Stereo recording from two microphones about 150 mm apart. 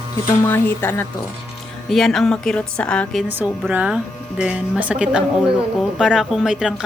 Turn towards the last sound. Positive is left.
turn(degrees=-5)  # may be behind; listen again after turning